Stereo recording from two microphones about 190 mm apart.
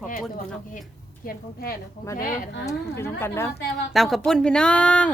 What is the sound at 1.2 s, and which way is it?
A woman's voice, 50° left (ahead or behind).